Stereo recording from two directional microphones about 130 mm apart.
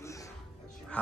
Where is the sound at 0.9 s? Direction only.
10° left (ahead or behind).